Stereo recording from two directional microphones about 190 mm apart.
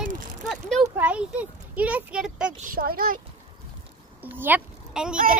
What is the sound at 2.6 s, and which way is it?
Speech, 50° right (ahead or behind).